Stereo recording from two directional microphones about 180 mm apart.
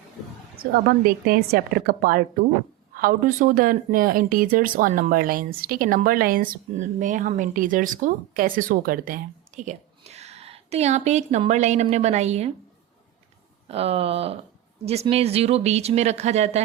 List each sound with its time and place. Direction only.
0.9 s a woman's voice: 55° right (ahead or behind); by 12.5 s 35° right (ahead or behind)
13.7 s speech: 35° right (ahead or behind)